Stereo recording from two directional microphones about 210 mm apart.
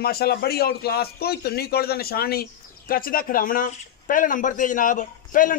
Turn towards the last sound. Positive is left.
turn(degrees=40)  # may be behind; listen again after turning